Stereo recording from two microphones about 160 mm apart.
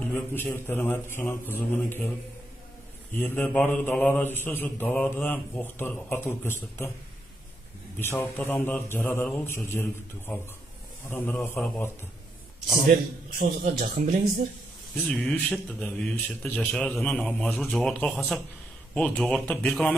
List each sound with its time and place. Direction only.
0.1 s mantra: 15° left (ahead or behind)
3.2 s mantra: 10° left (ahead or behind)
8.0 s mantra: 15° left (ahead or behind)
12.9 s a man's voice: 65° right (ahead or behind)
15.0 s a man's voice: 10° left (ahead or behind)
18.9 s mantra: 5° left (ahead or behind)